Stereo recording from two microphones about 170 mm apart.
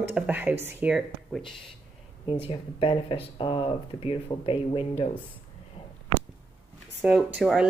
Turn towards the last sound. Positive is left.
turn(degrees=-5)  # may be behind; listen again after turning